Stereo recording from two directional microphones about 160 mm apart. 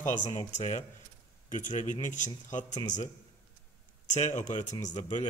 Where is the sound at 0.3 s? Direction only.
45° left (ahead or behind).